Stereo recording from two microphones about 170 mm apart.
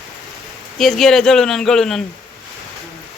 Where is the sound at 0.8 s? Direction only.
Centre (ahead or behind).